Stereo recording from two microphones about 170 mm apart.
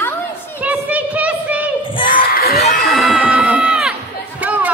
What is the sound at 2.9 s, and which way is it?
Music, centre (ahead or behind).